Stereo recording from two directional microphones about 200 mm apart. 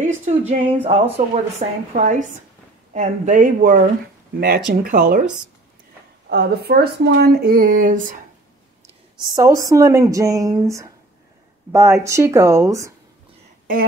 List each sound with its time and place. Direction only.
0.0 s speech: 35° right (ahead or behind)
6.2 s speech: 50° right (ahead or behind)
9.3 s speech: 15° right (ahead or behind)
13.7 s speech: 45° right (ahead or behind)